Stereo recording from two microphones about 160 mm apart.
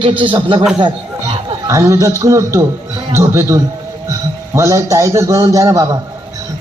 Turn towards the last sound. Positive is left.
turn(degrees=-20)  # may be behind; listen again after turning